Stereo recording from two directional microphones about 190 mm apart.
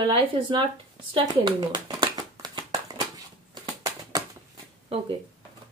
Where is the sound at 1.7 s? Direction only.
20° right (ahead or behind).